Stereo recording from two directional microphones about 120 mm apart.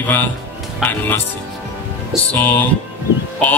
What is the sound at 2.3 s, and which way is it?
Speech, 15° left (ahead or behind).